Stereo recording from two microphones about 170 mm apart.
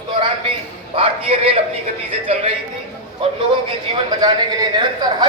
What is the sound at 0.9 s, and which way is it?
Speech, 35° right (ahead or behind).